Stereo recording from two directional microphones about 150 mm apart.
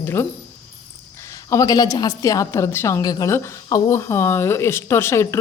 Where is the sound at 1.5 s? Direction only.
25° left (ahead or behind).